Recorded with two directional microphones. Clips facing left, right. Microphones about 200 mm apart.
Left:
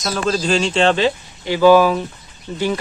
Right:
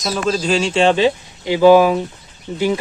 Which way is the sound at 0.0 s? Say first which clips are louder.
Right 1 dB; 5° right (ahead or behind).